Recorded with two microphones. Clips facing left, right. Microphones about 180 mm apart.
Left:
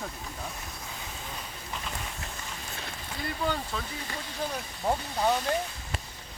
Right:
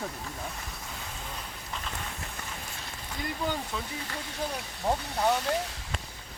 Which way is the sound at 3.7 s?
15° right (ahead or behind).